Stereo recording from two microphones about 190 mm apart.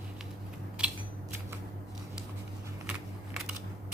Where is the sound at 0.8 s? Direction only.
5° right (ahead or behind).